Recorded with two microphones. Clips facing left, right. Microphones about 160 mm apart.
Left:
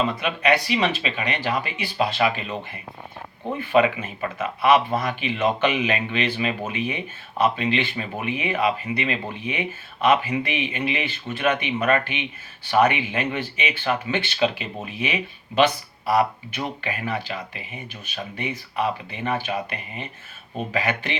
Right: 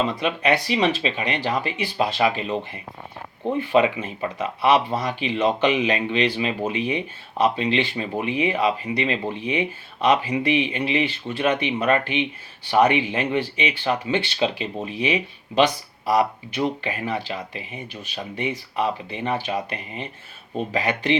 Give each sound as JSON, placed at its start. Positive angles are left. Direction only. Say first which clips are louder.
{"t": 0.0, "sound": "speech", "louder": "right 1 dB", "side_deg": -30}